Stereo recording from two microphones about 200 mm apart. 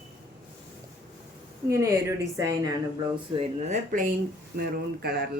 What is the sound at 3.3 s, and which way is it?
Speech, 40° right (ahead or behind).